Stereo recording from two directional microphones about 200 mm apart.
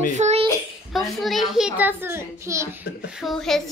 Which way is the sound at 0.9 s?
Centre (ahead or behind).